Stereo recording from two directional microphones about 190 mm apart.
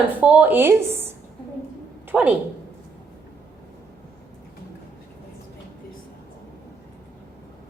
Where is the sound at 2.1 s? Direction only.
10° right (ahead or behind).